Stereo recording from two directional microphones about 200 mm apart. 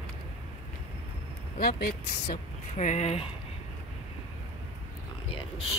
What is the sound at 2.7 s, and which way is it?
Speech, 35° left (ahead or behind).